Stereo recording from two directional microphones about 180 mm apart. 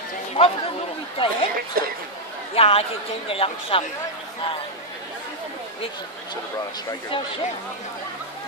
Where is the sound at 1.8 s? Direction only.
55° right (ahead or behind).